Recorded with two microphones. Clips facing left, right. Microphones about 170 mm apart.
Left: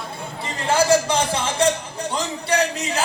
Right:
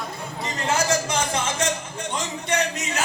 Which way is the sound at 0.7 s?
30° left (ahead or behind).